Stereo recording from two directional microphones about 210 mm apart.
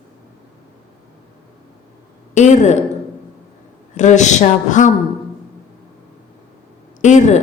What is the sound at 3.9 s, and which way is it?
Speech, 35° left (ahead or behind).